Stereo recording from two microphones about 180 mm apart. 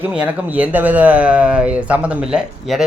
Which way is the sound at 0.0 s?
10° right (ahead or behind).